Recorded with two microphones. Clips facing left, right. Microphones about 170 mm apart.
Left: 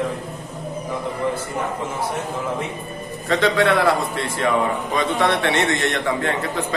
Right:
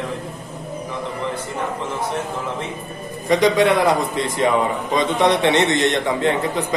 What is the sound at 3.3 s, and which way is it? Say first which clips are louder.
A man's voice: right 3 dB; 15° right (ahead or behind).